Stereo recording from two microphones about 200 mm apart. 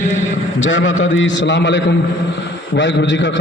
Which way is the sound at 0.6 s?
70° left (ahead or behind).